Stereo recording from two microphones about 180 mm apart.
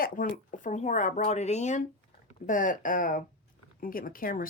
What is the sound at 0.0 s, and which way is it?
Speech, 50° left (ahead or behind).